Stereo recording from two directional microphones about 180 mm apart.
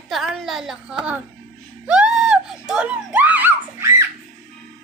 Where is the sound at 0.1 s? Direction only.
Centre (ahead or behind).